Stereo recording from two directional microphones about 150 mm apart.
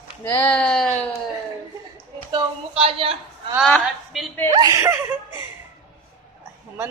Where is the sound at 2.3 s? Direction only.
35° right (ahead or behind).